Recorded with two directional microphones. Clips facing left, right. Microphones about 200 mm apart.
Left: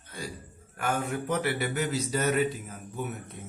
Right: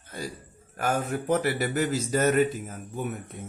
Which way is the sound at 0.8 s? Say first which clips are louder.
Right 2 dB; 40° right (ahead or behind).